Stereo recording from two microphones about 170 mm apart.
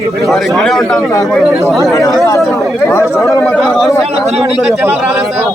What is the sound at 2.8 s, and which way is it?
Speech, 15° left (ahead or behind).